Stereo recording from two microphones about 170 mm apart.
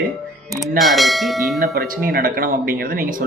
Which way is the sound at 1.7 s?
60° right (ahead or behind).